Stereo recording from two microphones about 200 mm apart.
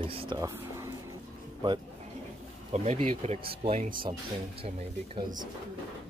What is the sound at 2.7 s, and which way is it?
Speech, 30° right (ahead or behind).